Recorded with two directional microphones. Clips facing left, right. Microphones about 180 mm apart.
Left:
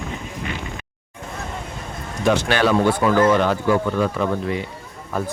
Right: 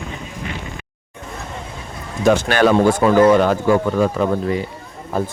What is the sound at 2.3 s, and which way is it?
Speech, 45° right (ahead or behind).